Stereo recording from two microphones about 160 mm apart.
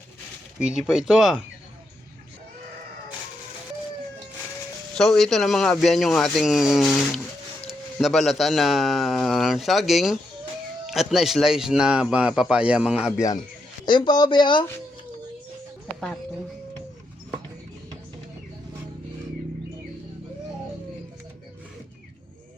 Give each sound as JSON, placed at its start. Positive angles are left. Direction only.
{"t": 0.6, "sound": "speech", "side_deg": -5}
{"t": 4.9, "sound": "speech", "side_deg": 0}
{"t": 13.8, "sound": "speech", "side_deg": 30}